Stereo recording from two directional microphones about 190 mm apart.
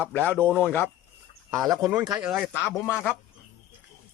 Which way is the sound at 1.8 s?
5° right (ahead or behind).